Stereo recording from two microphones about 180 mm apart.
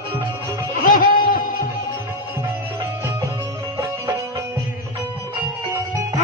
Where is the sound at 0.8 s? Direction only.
50° left (ahead or behind).